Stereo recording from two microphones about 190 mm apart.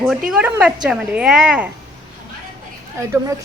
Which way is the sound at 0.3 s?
5° right (ahead or behind).